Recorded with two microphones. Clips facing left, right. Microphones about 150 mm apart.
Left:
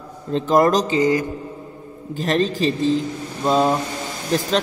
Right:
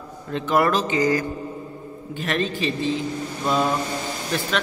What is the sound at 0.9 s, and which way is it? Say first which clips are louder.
Speech: left 3 dB; 25° left (ahead or behind).